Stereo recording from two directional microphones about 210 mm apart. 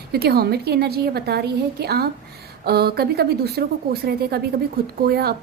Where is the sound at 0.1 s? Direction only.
50° right (ahead or behind).